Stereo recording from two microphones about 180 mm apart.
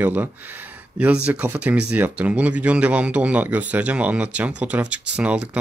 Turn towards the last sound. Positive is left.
turn(degrees=-5)  # may be behind; listen again after turning